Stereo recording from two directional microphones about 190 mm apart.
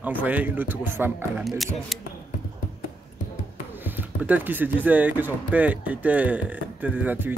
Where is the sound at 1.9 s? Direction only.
Centre (ahead or behind).